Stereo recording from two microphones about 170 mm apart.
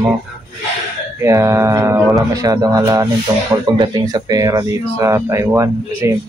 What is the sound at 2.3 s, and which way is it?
Speech, 20° right (ahead or behind).